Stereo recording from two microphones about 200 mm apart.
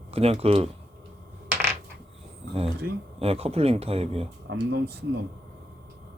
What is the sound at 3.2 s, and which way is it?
Speech, 30° right (ahead or behind).